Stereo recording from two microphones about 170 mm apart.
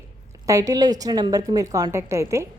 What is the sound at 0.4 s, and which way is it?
A woman's voice, 20° right (ahead or behind).